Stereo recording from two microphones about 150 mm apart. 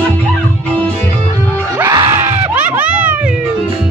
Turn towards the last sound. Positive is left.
turn(degrees=-10)  # may be behind; listen again after turning